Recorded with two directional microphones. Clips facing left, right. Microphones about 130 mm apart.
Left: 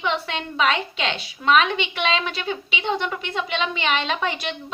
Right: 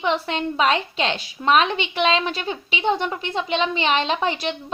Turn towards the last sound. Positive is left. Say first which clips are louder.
# right 3 dB
turn(degrees=-30)  # may be behind; listen again after turning